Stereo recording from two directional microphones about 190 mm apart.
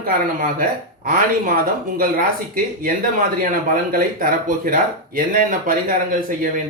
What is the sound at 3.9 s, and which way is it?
Speech, 45° right (ahead or behind).